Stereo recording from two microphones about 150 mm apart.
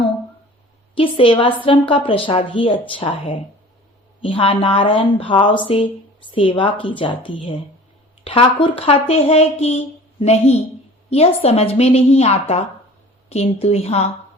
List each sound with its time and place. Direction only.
0.9 s a woman's voice: 35° left (ahead or behind)